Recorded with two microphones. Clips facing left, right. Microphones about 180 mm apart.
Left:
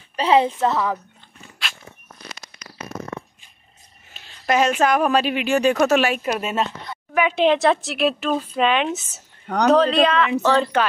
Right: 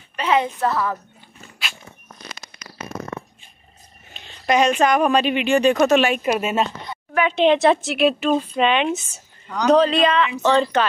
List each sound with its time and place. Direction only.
0.1 s a woman's voice: 30° left (ahead or behind)
4.1 s speech: 5° left (ahead or behind)
6.2 s speech: 5° right (ahead or behind)